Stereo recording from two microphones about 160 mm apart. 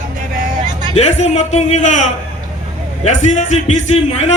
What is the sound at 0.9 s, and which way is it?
A man's voice, 45° left (ahead or behind).